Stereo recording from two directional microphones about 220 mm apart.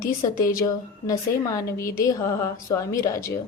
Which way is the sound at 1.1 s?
15° left (ahead or behind).